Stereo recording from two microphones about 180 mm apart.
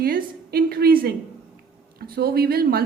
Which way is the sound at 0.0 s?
55° right (ahead or behind).